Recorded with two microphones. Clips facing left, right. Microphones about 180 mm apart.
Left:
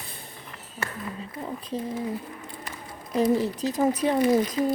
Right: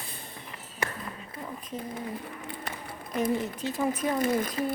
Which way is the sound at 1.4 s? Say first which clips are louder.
Left 6 dB; 30° left (ahead or behind).